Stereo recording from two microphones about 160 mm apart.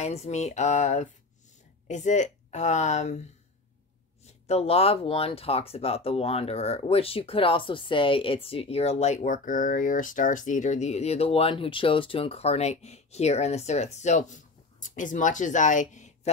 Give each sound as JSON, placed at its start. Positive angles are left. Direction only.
{"t": 0.0, "sound": "speech", "side_deg": 45}